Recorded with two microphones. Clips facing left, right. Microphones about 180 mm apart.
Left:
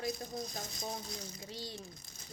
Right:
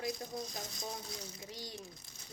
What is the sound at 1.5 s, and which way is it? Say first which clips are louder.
Speech: left 3 dB; 25° left (ahead or behind).